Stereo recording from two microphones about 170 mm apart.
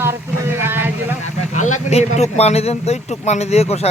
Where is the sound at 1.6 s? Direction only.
45° left (ahead or behind).